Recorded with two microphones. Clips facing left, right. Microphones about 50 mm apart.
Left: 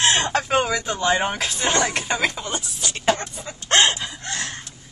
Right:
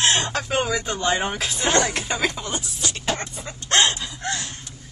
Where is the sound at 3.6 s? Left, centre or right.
Left.